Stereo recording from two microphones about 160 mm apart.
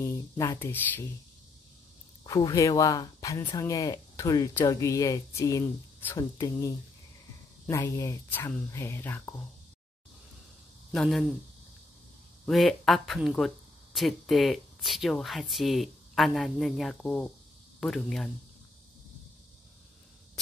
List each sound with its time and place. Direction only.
0.0 s speech: 20° left (ahead or behind)
2.2 s speech: 25° left (ahead or behind)
10.9 s speech: centre (ahead or behind)
12.4 s speech: centre (ahead or behind)